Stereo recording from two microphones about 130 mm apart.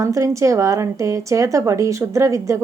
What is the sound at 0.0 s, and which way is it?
Speech, 25° right (ahead or behind).